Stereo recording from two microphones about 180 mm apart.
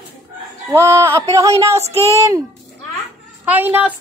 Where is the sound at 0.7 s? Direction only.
15° right (ahead or behind).